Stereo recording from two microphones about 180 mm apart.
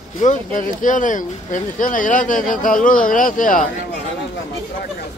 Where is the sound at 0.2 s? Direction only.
45° left (ahead or behind).